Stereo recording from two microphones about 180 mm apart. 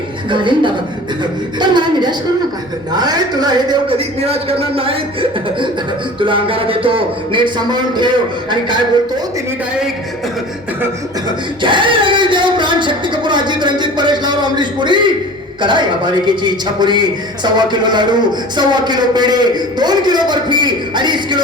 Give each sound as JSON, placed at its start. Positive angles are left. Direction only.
{"t": 0.3, "sound": "a man's voice", "side_deg": -25}
{"t": 6.1, "sound": "a man's voice", "side_deg": -25}
{"t": 11.3, "sound": "a sound", "side_deg": -25}
{"t": 15.6, "sound": "a man's voice", "side_deg": -25}